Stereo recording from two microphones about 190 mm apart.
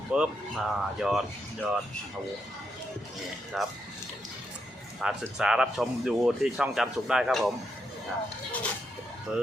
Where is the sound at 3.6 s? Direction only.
Centre (ahead or behind).